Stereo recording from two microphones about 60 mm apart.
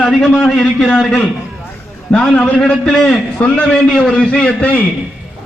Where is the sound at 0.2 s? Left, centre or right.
Centre.